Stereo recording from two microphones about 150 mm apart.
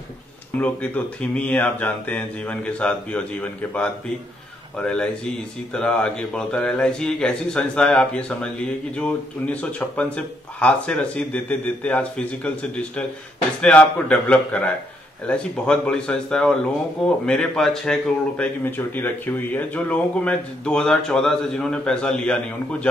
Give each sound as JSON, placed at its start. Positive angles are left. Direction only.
{"t": 0.6, "sound": "speech", "side_deg": 10}
{"t": 18.4, "sound": "speech", "side_deg": 15}